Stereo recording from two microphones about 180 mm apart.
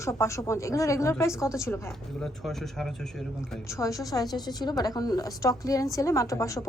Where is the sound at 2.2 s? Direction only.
Centre (ahead or behind).